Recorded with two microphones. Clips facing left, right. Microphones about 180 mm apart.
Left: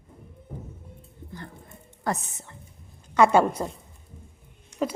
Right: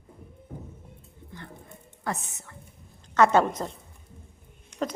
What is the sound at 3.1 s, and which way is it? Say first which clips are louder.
Speech: left 2 dB; 10° left (ahead or behind).